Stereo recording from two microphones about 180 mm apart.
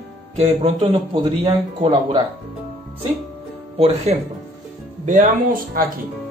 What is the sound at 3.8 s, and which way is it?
Speech, 35° right (ahead or behind).